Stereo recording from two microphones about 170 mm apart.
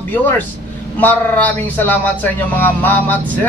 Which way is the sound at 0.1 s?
10° left (ahead or behind).